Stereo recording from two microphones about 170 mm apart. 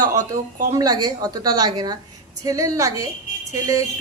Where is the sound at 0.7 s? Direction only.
20° right (ahead or behind).